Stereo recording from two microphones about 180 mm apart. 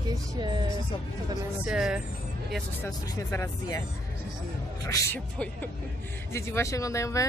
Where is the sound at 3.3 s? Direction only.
20° left (ahead or behind).